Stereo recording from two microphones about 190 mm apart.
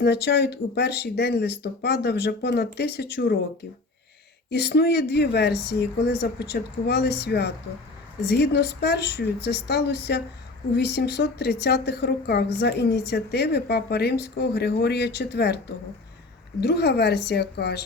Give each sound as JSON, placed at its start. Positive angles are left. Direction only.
{"t": 0.0, "sound": "a woman's voice", "side_deg": 60}
{"t": 4.5, "sound": "a woman's voice", "side_deg": 60}